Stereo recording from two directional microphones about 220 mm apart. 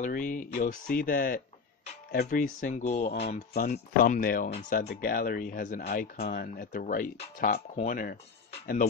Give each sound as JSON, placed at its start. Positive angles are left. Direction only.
{"t": 0.0, "sound": "speech", "side_deg": 35}